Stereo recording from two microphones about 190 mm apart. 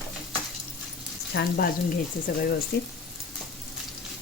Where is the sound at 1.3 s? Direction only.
60° left (ahead or behind).